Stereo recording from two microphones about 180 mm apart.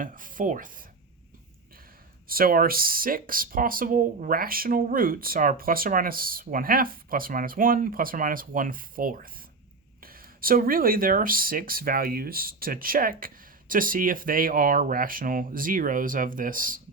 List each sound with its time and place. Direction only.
0.0 s speech: 50° right (ahead or behind)
2.2 s speech: 55° right (ahead or behind)